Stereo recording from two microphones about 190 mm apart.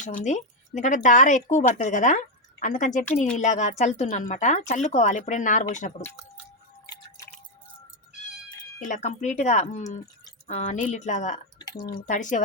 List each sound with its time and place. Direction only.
0.0 s speech: 40° left (ahead or behind)
6.8 s drip: 20° left (ahead or behind)
8.8 s speech: 40° left (ahead or behind)